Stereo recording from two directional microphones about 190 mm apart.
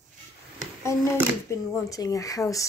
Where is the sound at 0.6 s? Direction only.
15° left (ahead or behind).